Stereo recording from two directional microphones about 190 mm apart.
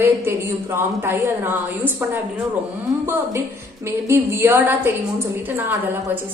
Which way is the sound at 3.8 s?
15° right (ahead or behind).